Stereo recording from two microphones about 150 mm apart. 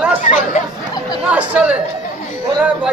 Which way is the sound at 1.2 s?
10° right (ahead or behind).